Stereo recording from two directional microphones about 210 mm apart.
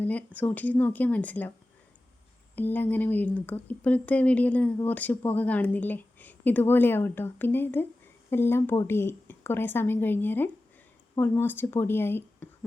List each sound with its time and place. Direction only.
0.0 s speech: 10° left (ahead or behind)
2.6 s speech: 10° left (ahead or behind)